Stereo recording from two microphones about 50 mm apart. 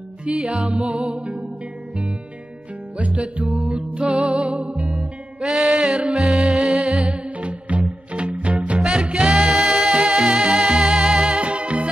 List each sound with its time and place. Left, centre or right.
0.2 s music: right
3.0 s music: right
9.3 s music: centre
9.9 s music: centre